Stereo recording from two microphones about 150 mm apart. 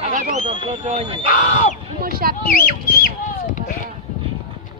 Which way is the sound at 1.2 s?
60° left (ahead or behind).